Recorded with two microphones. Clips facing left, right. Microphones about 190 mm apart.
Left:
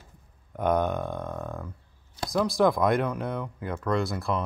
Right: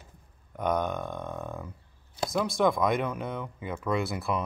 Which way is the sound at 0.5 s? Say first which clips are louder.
Left 3 dB; 5° left (ahead or behind).